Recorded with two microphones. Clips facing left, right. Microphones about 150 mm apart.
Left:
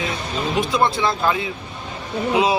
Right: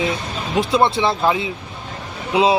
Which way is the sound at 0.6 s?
30° right (ahead or behind).